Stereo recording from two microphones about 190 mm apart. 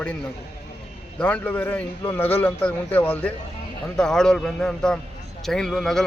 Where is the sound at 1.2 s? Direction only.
10° left (ahead or behind).